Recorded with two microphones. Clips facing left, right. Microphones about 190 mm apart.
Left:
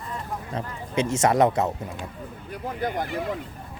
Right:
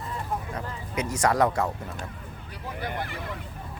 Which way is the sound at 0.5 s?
25° left (ahead or behind).